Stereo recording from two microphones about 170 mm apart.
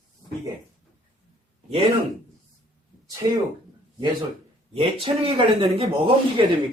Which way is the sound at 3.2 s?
30° right (ahead or behind).